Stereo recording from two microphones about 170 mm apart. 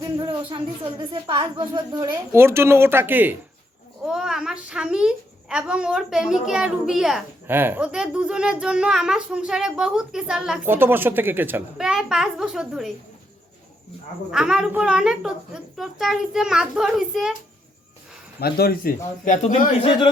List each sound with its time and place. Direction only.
0.0 s a child's voice: 30° right (ahead or behind); by 12.9 s 5° right (ahead or behind)
14.3 s a child's voice: 5° right (ahead or behind)
18.3 s a man's voice: 65° left (ahead or behind); by 19.6 s 50° left (ahead or behind)